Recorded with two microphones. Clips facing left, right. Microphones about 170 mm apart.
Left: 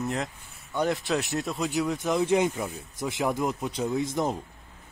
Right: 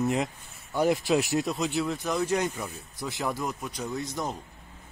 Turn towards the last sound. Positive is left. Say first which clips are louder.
# left 5 dB
turn(degrees=20)  # may be behind; listen again after turning